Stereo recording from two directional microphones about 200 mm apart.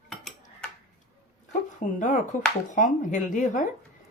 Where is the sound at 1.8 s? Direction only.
40° left (ahead or behind).